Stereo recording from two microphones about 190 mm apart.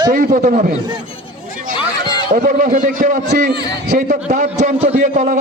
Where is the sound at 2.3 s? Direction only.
45° right (ahead or behind).